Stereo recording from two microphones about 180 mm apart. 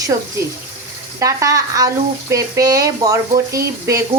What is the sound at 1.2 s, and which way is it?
Speech, 15° right (ahead or behind).